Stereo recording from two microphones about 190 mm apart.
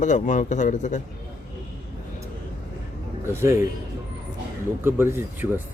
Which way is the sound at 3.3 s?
15° right (ahead or behind).